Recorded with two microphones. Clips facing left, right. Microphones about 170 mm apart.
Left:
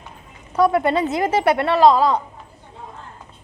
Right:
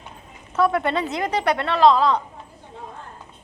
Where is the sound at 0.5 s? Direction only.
10° left (ahead or behind).